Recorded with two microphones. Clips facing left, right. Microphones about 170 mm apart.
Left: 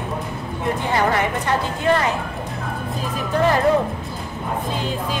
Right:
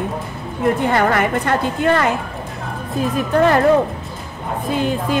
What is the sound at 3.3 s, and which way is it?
Speech, 60° right (ahead or behind).